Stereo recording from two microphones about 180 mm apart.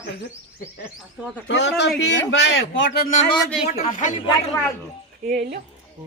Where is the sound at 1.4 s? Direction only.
80° left.